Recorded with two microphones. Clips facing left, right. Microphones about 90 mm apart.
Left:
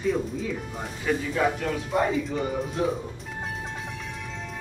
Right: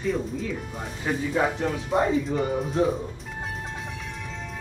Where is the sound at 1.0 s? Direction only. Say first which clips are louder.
Even; 25° right (ahead or behind).